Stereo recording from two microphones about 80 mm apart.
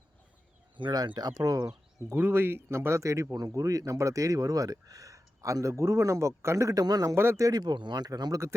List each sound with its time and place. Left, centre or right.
0.9 s speech: right
2.1 s speech: right